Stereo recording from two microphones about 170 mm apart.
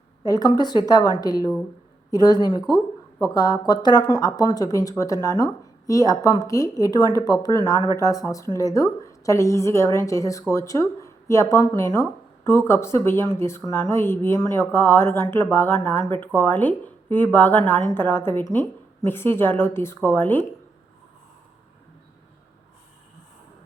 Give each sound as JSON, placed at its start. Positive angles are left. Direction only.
{"t": 0.3, "sound": "a woman's voice", "side_deg": 20}